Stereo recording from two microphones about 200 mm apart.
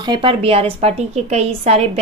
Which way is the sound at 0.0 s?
25° right (ahead or behind).